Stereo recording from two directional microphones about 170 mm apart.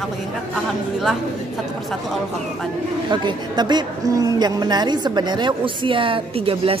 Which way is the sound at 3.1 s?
25° right (ahead or behind).